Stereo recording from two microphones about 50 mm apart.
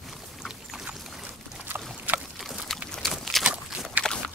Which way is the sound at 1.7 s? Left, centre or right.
Right.